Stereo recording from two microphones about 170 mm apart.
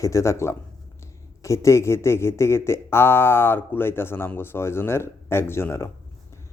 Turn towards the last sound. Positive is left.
turn(degrees=15)  # may be behind; listen again after turning